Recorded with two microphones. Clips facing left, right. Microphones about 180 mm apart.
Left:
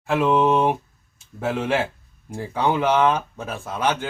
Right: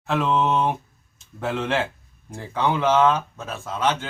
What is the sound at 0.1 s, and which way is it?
Speech, 10° left (ahead or behind).